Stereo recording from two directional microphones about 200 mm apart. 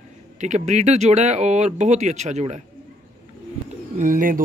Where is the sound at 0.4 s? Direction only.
35° right (ahead or behind).